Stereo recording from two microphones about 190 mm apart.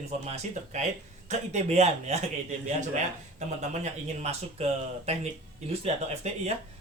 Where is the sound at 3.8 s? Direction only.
35° right (ahead or behind).